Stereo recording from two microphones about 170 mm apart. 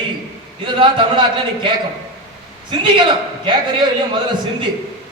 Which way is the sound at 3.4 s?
25° right (ahead or behind).